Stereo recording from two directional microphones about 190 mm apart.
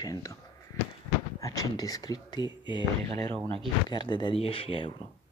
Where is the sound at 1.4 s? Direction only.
15° left (ahead or behind).